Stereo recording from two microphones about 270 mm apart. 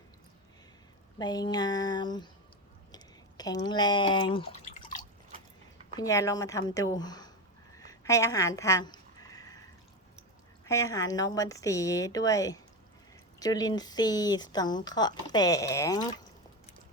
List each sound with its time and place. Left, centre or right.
1.2 s speech: centre
6.0 s speech: centre
7.8 s a sound: centre
10.7 s speech: centre